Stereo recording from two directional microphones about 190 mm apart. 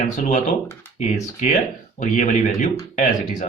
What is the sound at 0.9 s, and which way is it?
Speech, 40° left (ahead or behind).